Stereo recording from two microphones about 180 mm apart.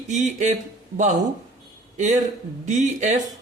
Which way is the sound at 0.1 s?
40° right (ahead or behind).